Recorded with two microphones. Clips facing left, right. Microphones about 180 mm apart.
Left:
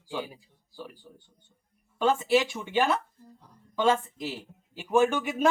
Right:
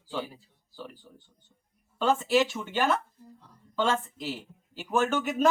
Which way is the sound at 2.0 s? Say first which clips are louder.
Even; 10° left (ahead or behind).